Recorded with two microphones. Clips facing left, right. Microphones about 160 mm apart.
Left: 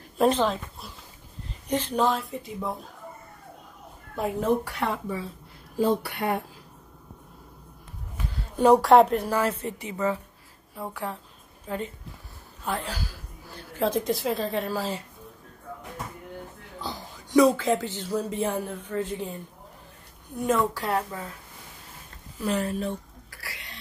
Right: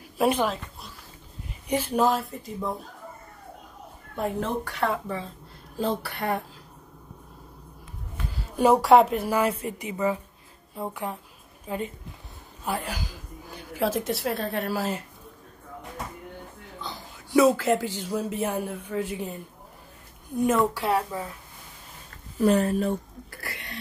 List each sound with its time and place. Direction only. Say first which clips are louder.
0.2 s a man's voice: left 1 dB; 10° right (ahead or behind)
1.7 s speech: right 1 dB; 10° right (ahead or behind)
4.1 s speech: even; 5° left (ahead or behind)
5.9 s speech: left 1 dB; 10° left (ahead or behind)
8.5 s a man's voice: left 1 dB; centre (ahead or behind)
17.3 s a man's voice: even; 5° right (ahead or behind)
22.4 s a sound: right 6 dB; 40° right (ahead or behind)